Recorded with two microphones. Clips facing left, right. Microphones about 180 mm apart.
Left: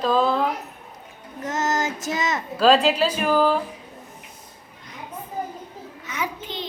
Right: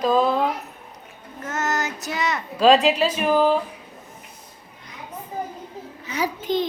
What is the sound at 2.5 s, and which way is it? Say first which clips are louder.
A woman's voice: right 1 dB; 5° right (ahead or behind).